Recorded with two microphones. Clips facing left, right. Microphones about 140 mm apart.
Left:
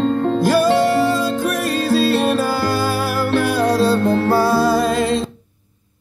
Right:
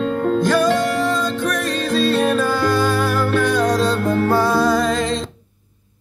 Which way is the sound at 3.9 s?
30° left (ahead or behind).